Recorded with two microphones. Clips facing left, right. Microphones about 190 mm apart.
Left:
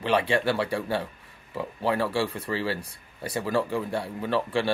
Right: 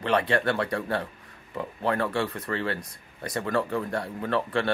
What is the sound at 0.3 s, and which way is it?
Speech, 5° left (ahead or behind).